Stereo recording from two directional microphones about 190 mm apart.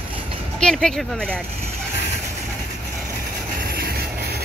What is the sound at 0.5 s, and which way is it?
Speech, 5° left (ahead or behind).